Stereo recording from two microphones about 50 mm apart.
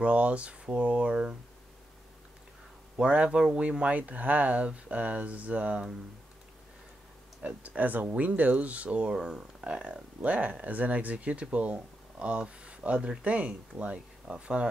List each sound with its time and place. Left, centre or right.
0.0 s speech: right
3.3 s speech: centre
7.4 s speech: right
9.1 s speech: centre
10.2 s speech: right